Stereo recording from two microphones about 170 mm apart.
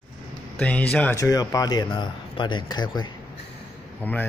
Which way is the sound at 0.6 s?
10° left (ahead or behind).